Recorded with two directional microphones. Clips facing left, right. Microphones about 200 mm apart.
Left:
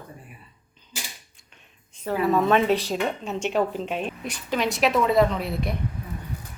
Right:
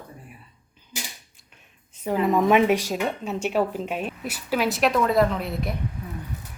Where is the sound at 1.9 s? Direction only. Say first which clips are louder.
Right 1 dB; 15° right (ahead or behind).